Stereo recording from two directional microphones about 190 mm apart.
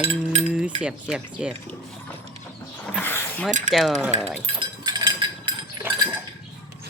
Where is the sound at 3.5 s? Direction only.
40° right (ahead or behind).